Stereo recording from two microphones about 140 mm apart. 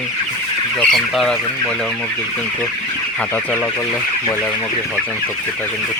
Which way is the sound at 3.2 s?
10° left (ahead or behind).